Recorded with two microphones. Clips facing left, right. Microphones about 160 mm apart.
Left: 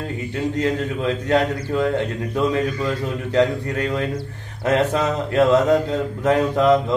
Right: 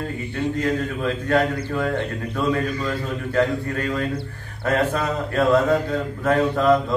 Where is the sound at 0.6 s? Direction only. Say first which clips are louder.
Left 3 dB; 20° left (ahead or behind).